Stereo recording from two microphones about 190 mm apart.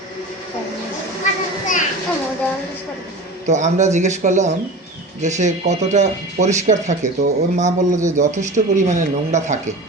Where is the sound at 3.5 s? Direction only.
40° right (ahead or behind).